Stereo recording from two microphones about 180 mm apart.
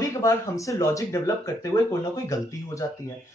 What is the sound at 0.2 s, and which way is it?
Speech, 15° left (ahead or behind).